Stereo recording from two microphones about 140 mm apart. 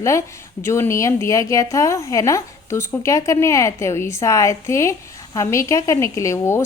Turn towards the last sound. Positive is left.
turn(degrees=20)  # may be behind; listen again after turning